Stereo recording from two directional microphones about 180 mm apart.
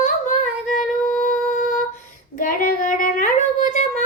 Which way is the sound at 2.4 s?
50° left (ahead or behind).